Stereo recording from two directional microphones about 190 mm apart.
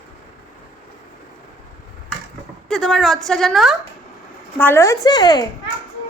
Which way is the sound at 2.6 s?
Centre (ahead or behind).